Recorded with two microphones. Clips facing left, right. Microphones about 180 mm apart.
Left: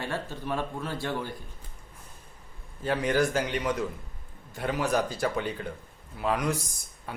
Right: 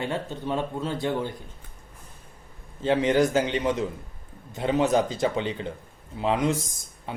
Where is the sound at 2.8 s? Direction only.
20° right (ahead or behind).